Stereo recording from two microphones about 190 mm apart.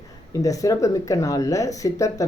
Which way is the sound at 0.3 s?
20° left (ahead or behind).